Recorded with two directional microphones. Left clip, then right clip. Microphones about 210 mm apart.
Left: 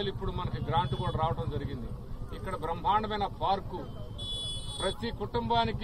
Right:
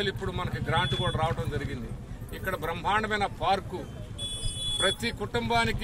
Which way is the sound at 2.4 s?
30° right (ahead or behind).